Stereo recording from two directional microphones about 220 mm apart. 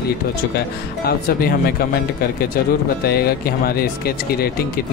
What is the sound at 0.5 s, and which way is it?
Speech, 45° left (ahead or behind).